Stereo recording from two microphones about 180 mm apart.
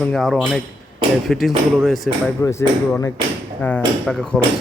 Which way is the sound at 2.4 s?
15° left (ahead or behind).